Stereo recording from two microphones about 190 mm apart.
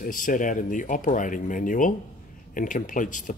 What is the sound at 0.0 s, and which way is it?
Speech, 45° left (ahead or behind).